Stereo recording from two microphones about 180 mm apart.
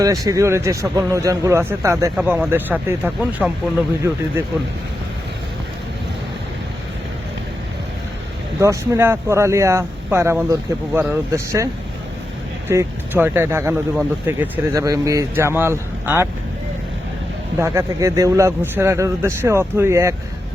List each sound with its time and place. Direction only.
0.0 s speech: 20° right (ahead or behind)
8.6 s speech: 15° right (ahead or behind)
17.6 s speech: 15° right (ahead or behind)